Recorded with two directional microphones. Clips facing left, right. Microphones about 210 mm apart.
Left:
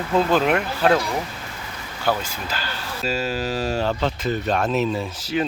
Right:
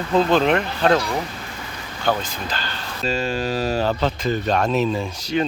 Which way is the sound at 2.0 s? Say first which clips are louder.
Right 1 dB; 10° left (ahead or behind).